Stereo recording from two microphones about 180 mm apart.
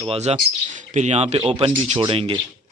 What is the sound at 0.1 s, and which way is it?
Speech, 35° right (ahead or behind).